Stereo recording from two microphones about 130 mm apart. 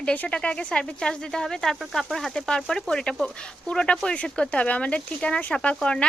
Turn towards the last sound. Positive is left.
turn(degrees=5)  # may be behind; listen again after turning